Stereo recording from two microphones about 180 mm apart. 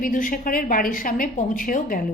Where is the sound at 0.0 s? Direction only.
50° left (ahead or behind).